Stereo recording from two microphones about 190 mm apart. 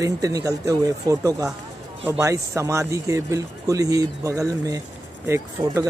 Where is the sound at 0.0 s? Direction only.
20° right (ahead or behind).